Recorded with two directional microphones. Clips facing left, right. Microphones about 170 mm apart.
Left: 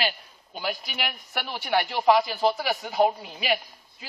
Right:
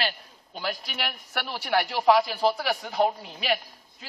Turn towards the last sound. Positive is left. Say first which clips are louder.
# left 1 dB
turn(degrees=5)  # may be behind; listen again after turning